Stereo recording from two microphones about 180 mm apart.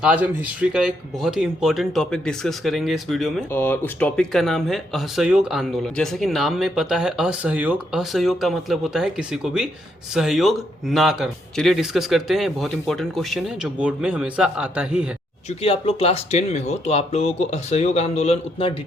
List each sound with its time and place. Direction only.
0.0 s speech: 10° right (ahead or behind)
3.5 s speech: 10° left (ahead or behind); by 15.1 s 5° right (ahead or behind)
15.4 s speech: 30° left (ahead or behind)